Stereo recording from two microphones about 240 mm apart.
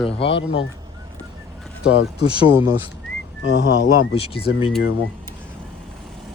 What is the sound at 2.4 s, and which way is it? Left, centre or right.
Speech, centre.